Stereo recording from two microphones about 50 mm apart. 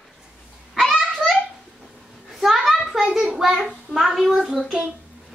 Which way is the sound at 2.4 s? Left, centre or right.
Centre.